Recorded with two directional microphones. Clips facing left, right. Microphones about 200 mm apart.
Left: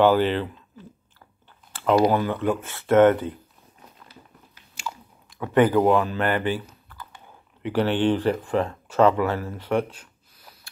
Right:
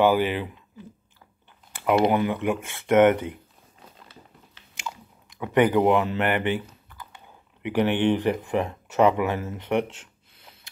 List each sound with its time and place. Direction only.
0.0 s speech: 10° right (ahead or behind)
1.9 s speech: 20° right (ahead or behind)
4.6 s chewing: 20° right (ahead or behind)
7.6 s speech: 15° right (ahead or behind)